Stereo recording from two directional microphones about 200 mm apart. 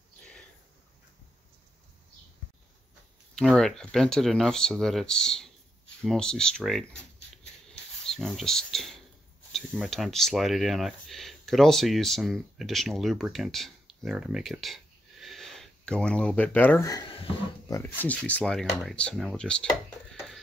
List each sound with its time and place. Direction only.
3.3 s speech: centre (ahead or behind)
7.6 s a sound: 5° left (ahead or behind)
9.5 s speech: centre (ahead or behind); by 17.7 s 20° left (ahead or behind)
17.7 s speech: 10° left (ahead or behind)